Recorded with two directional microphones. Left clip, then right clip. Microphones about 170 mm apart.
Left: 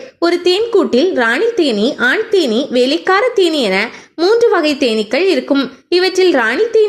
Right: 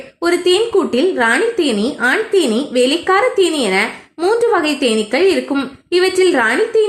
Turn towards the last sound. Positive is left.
turn(degrees=25)  # may be behind; listen again after turning